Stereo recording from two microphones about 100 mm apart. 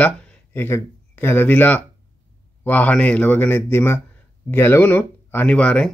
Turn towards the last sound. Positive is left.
turn(degrees=10)  # may be behind; listen again after turning